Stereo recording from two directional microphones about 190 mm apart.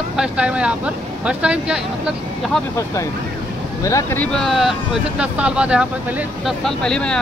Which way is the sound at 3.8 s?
15° left (ahead or behind).